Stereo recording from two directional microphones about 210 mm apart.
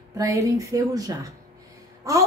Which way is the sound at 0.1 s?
15° right (ahead or behind).